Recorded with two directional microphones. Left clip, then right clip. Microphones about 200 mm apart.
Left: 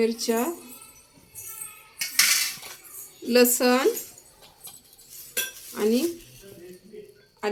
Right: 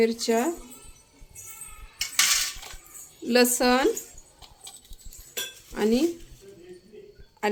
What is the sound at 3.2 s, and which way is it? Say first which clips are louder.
Speech: left 1 dB; 35° right (ahead or behind).